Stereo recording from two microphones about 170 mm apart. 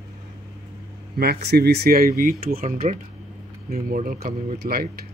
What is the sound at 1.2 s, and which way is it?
Speech, 70° right (ahead or behind).